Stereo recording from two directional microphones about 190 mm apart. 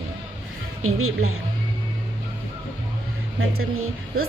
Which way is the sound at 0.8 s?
90° right.